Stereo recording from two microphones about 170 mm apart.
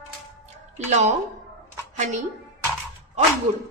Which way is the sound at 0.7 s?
40° right (ahead or behind).